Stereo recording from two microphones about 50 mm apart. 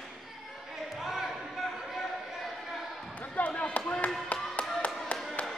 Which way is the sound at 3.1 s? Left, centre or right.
Left.